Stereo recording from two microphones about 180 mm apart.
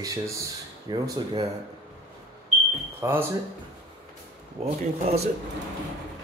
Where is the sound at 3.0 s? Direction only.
10° right (ahead or behind).